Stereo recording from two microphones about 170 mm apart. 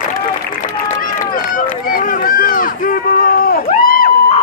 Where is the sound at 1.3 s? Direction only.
55° left (ahead or behind).